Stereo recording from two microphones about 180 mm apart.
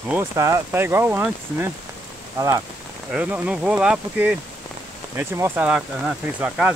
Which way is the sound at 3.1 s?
5° right (ahead or behind).